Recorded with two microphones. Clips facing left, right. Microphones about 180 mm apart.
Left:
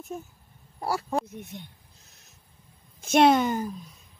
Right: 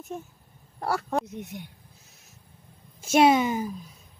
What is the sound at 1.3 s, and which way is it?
Speech, 15° right (ahead or behind).